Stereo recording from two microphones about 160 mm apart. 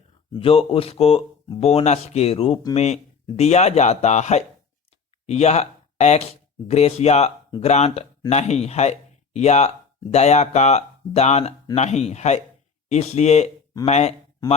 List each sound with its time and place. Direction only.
0.3 s speech: 35° left (ahead or behind)